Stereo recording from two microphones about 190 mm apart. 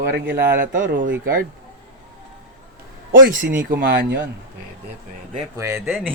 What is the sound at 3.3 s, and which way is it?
Speech, 45° right (ahead or behind).